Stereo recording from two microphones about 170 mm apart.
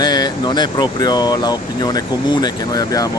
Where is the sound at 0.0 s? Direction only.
25° left (ahead or behind).